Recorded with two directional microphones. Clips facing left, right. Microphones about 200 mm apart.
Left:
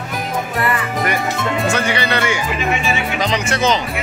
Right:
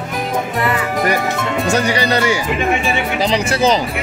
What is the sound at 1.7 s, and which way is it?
Speech, 40° right (ahead or behind).